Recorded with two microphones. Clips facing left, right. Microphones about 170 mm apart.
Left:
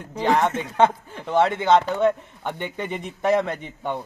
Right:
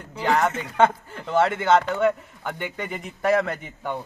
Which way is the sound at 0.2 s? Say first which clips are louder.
Left 2 dB; 20° left (ahead or behind).